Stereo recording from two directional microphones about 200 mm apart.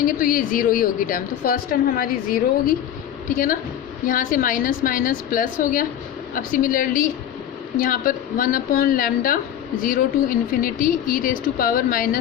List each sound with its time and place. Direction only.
0.0 s a woman's voice: 45° left (ahead or behind)